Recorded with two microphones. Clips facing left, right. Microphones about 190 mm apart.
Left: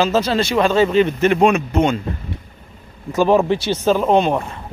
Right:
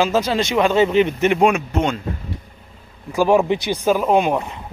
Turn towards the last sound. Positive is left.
turn(degrees=-10)  # may be behind; listen again after turning